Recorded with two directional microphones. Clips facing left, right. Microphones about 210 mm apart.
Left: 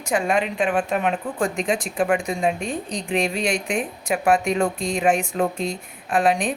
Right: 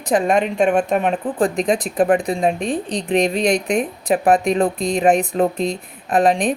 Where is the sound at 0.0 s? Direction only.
35° right (ahead or behind).